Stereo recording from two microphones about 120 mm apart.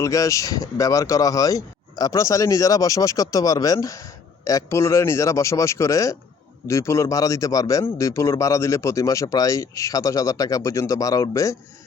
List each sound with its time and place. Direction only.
0.0 s speech: 25° left (ahead or behind)